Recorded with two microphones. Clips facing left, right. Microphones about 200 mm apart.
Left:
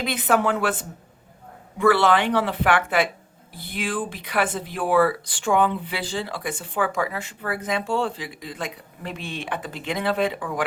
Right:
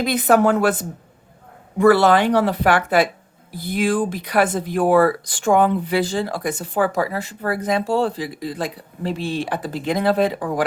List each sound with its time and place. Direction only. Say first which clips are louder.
0.0 s speech: right 6 dB; 40° right (ahead or behind)